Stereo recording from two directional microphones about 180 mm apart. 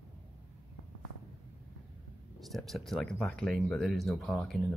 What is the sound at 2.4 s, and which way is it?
Speech, centre (ahead or behind).